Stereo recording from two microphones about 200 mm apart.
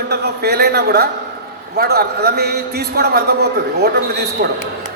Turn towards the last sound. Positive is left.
turn(degrees=-50)  # may be behind; listen again after turning